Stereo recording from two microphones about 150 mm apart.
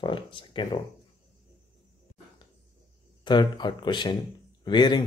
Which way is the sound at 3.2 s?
30° left (ahead or behind).